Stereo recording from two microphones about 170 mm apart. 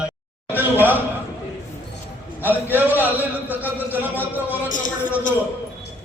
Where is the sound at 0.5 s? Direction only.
10° right (ahead or behind).